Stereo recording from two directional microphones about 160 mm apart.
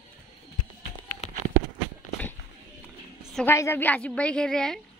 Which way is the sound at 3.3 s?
15° left (ahead or behind).